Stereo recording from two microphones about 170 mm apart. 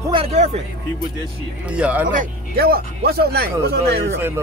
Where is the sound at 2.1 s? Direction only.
55° right (ahead or behind).